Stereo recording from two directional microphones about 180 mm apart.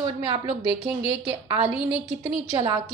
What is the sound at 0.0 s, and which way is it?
A woman's voice, 25° right (ahead or behind).